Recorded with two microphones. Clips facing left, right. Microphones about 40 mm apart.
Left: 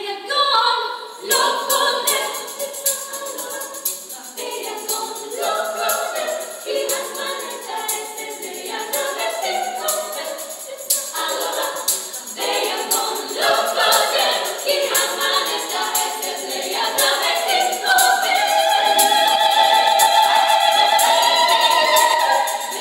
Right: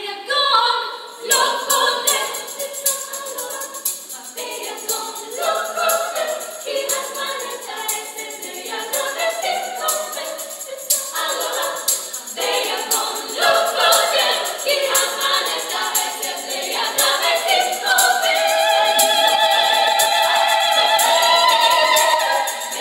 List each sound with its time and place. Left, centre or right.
0.3 s a capella: centre
1.3 s choir: centre
1.8 s music: centre
5.4 s music: centre
11.1 s music: centre
13.0 s choir: centre
13.7 s music: centre
15.0 s music: centre
18.9 s music: centre